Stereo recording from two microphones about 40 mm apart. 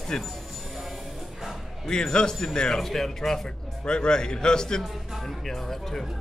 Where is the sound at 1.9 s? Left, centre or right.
Centre.